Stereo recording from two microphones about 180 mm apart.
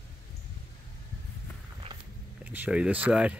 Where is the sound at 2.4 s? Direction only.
10° right (ahead or behind).